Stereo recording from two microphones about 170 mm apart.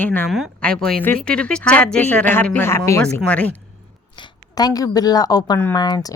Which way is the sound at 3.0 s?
5° left (ahead or behind).